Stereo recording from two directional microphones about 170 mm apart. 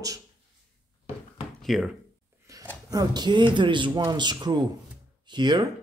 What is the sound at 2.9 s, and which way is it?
Speech, 25° right (ahead or behind).